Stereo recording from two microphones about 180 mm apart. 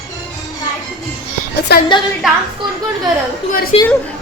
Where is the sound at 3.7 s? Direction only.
35° left (ahead or behind).